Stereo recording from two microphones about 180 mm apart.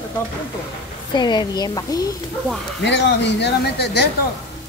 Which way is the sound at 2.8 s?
70° left (ahead or behind).